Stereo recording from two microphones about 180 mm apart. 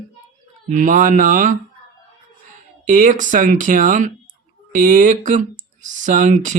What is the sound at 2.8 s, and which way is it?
Speech, 45° right (ahead or behind).